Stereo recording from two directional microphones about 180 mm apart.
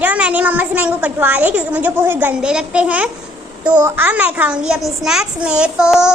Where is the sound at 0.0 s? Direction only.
10° right (ahead or behind).